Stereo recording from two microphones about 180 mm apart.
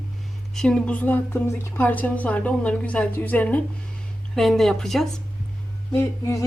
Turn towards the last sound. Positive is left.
turn(degrees=15)  # may be behind; listen again after turning